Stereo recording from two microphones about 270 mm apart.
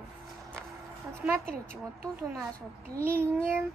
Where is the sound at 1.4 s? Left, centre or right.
Right.